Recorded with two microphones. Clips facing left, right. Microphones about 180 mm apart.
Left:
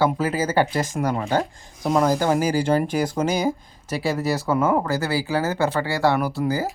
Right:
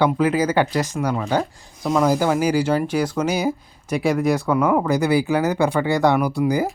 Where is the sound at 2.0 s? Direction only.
10° right (ahead or behind).